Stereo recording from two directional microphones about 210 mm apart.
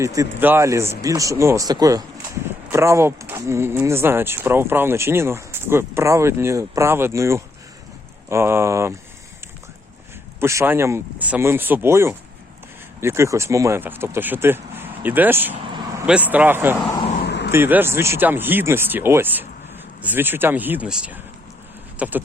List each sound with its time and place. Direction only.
0.0 s speech: 15° right (ahead or behind)
10.4 s speech: 15° right (ahead or behind)
15.6 s vehicle: 20° right (ahead or behind)
16.0 s speech: 5° right (ahead or behind)
17.2 s vehicle: 55° left (ahead or behind)
17.5 s speech: 10° right (ahead or behind)
21.9 s a sound: 5° right (ahead or behind)